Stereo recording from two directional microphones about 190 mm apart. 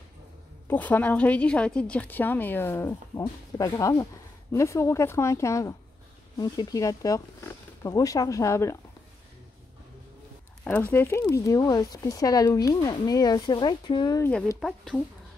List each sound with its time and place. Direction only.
0.7 s a woman's voice: 10° left (ahead or behind)
10.6 s speech: 10° left (ahead or behind)
14.2 s speech: 5° left (ahead or behind)